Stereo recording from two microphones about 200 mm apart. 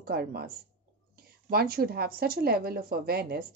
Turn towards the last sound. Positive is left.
turn(degrees=-50)  # may be behind; listen again after turning